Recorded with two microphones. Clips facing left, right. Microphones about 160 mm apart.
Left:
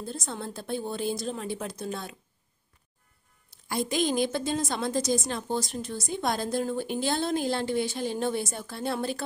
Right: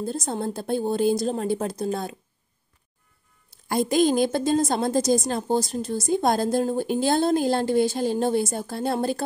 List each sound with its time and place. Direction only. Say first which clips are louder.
0.0 s a woman's voice: right 8 dB; 40° right (ahead or behind)
3.6 s a woman's voice: right 7 dB; 45° right (ahead or behind)